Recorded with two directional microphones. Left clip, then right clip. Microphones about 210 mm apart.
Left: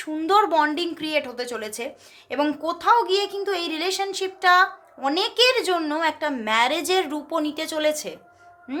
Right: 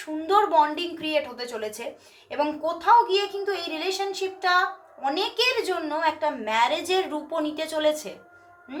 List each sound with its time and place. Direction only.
0.0 s a woman's voice: 55° left (ahead or behind)